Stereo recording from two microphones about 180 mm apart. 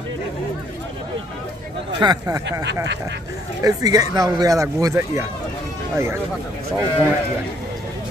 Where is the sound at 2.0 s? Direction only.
20° right (ahead or behind).